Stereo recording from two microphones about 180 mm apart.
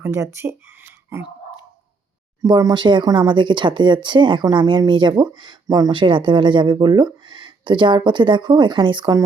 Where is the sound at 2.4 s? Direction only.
20° right (ahead or behind).